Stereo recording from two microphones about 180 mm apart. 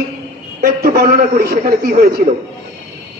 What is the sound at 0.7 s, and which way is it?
A woman's voice, 60° right (ahead or behind).